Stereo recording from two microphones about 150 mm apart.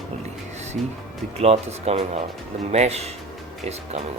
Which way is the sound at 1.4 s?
45° right (ahead or behind).